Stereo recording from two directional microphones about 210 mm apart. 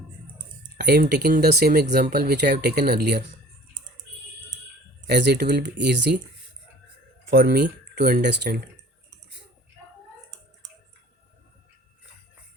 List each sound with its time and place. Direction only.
0.8 s speech: 50° right (ahead or behind)
5.0 s speech: 55° right (ahead or behind)
7.3 s speech: 50° right (ahead or behind)